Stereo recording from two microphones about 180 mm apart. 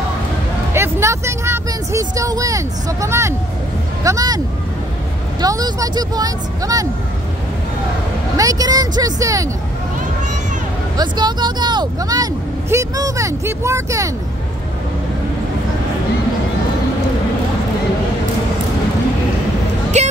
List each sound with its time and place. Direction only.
0.7 s vehicle: 15° right (ahead or behind)
4.0 s speech: 20° right (ahead or behind)
5.4 s speech: 20° right (ahead or behind)
8.4 s speech: 20° right (ahead or behind)
11.0 s speech: 25° right (ahead or behind)
19.9 s music: 40° right (ahead or behind)